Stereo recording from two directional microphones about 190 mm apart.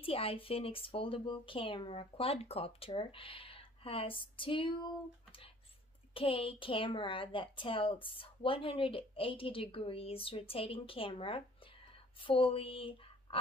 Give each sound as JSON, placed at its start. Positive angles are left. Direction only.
{"t": 0.0, "sound": "speech", "side_deg": 30}
{"t": 6.1, "sound": "speech", "side_deg": 30}